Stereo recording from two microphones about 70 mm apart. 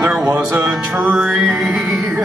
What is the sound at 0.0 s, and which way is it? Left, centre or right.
Music, centre.